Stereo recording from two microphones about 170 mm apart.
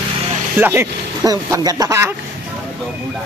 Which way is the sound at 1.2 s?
20° right (ahead or behind).